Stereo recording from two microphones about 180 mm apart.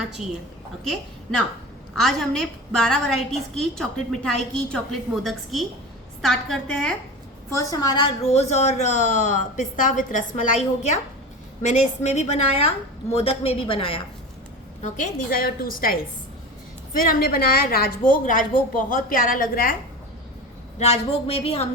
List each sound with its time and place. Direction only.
2.0 s a woman's voice: centre (ahead or behind)
7.5 s a woman's voice: 15° left (ahead or behind)
14.8 s a woman's voice: 40° left (ahead or behind)
17.1 s a woman's voice: 55° left (ahead or behind)
20.7 s a woman's voice: 35° left (ahead or behind)